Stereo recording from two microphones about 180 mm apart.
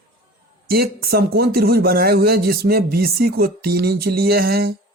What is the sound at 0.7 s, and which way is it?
Speech, 60° right (ahead or behind).